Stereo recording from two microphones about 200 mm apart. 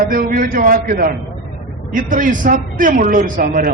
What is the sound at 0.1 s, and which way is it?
A man's voice, 45° right (ahead or behind).